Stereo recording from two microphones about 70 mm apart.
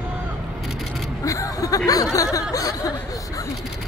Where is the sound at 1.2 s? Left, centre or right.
Left.